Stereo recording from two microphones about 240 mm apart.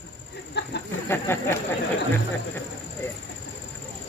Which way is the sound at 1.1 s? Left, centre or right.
Centre.